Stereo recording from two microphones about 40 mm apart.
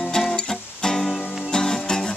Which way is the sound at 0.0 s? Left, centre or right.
Centre.